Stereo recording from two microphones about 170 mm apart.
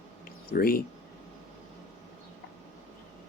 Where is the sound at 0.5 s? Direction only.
60° left (ahead or behind).